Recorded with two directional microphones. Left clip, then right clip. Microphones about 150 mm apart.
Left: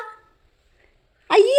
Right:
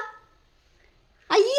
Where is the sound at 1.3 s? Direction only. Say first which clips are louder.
Left 5 dB; 15° left (ahead or behind).